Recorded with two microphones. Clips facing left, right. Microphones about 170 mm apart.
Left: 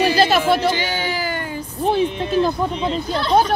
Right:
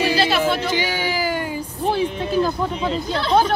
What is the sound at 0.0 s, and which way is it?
Music, 45° left (ahead or behind).